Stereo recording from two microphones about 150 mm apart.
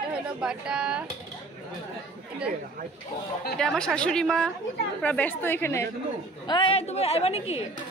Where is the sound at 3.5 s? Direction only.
5° left (ahead or behind).